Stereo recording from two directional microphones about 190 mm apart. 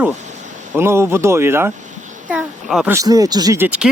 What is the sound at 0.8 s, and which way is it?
Speech, 15° right (ahead or behind).